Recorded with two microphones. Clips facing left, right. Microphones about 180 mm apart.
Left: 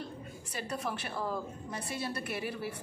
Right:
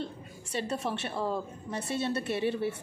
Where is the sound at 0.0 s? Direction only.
30° right (ahead or behind).